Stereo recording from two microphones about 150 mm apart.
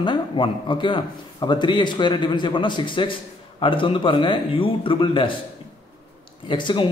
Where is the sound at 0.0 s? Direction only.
35° left (ahead or behind).